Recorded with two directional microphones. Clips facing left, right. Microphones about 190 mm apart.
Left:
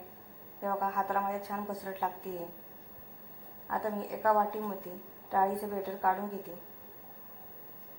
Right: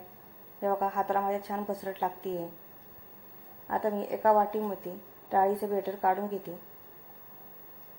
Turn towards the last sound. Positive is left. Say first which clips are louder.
# right 4 dB
turn(degrees=-25)  # may be behind; listen again after turning